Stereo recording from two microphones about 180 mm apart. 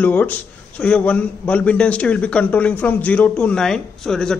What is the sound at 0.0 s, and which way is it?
A man's voice, 10° left (ahead or behind).